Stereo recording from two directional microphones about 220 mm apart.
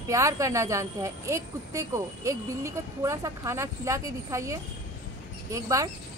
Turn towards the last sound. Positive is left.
turn(degrees=-15)  # may be behind; listen again after turning